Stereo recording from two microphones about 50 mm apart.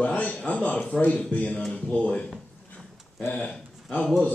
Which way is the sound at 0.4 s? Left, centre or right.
Left.